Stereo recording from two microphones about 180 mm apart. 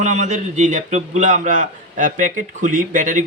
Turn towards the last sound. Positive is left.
turn(degrees=-45)  # may be behind; listen again after turning